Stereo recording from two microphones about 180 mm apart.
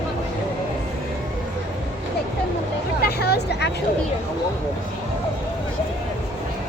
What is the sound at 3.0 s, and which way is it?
Hubbub, 60° left (ahead or behind).